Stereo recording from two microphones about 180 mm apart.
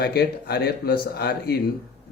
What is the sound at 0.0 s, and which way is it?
Speech, 60° left (ahead or behind).